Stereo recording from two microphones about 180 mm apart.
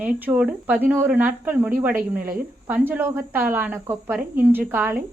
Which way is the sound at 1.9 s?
50° right (ahead or behind).